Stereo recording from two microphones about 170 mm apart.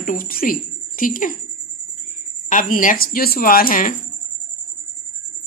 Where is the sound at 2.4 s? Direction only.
50° left (ahead or behind).